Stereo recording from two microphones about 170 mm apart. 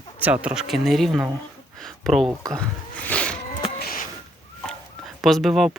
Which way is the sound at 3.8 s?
55° left (ahead or behind).